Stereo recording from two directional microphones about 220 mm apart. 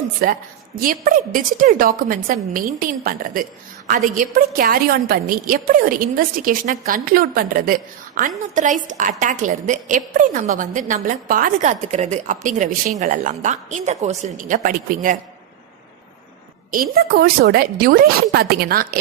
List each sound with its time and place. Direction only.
0.2 s a woman's voice: 40° right (ahead or behind)
16.7 s a woman's voice: 40° right (ahead or behind)